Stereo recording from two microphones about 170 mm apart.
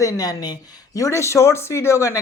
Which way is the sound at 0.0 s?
20° left (ahead or behind).